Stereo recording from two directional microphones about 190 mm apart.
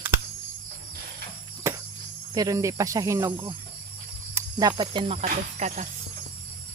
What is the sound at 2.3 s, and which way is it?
Speech, 15° right (ahead or behind).